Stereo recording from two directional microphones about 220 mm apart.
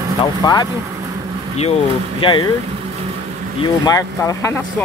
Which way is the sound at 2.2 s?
20° left (ahead or behind).